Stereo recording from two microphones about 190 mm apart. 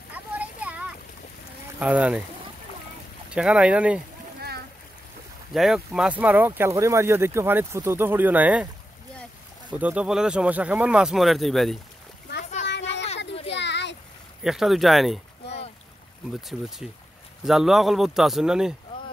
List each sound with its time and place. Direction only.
0.1 s a sound: 10° right (ahead or behind)
1.8 s speech: 5° right (ahead or behind)
3.3 s speech: 5° right (ahead or behind)
5.5 s speech: centre (ahead or behind)
9.7 s speech: 5° right (ahead or behind)
13.5 s a sound: 65° left (ahead or behind)
14.4 s speech: centre (ahead or behind)
16.3 s speech: centre (ahead or behind)